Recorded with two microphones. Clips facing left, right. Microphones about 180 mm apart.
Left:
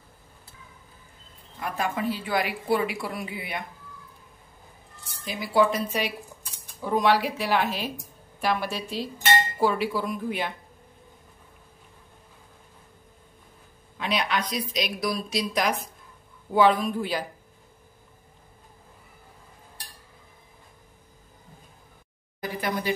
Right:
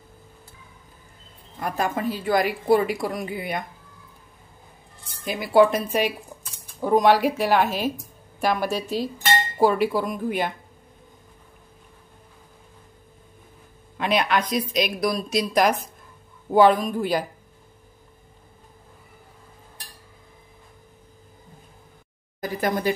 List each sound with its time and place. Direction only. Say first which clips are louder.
1.6 s speech: right 3 dB; 40° right (ahead or behind)
5.2 s speech: right 5 dB; 55° right (ahead or behind)
13.9 s speech: right 5 dB; 55° right (ahead or behind)
22.4 s speech: right 5 dB; 45° right (ahead or behind)